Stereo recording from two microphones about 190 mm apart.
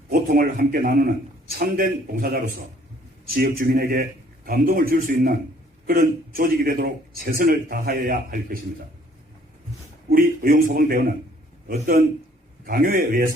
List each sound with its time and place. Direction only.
0.1 s a man's voice: 50° right (ahead or behind)
10.1 s a man's voice: 50° right (ahead or behind)
12.6 s a man's voice: 50° right (ahead or behind)